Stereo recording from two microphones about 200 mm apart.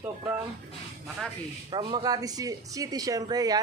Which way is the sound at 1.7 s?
20° right (ahead or behind).